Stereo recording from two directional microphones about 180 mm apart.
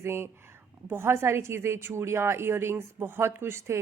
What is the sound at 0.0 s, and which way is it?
A woman's voice, 15° right (ahead or behind).